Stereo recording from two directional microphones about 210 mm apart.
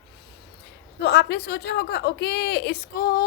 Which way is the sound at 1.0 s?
50° left (ahead or behind).